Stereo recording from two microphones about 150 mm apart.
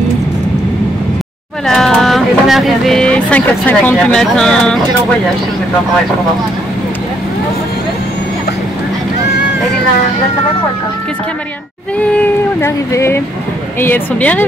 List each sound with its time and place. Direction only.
1.7 s speech: 5° left (ahead or behind)
12.0 s a sound: 10° left (ahead or behind)
13.7 s speech: 15° left (ahead or behind)